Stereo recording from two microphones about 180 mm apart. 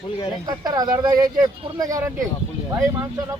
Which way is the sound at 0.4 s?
20° right (ahead or behind).